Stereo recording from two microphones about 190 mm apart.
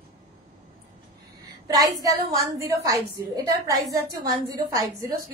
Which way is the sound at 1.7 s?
20° right (ahead or behind).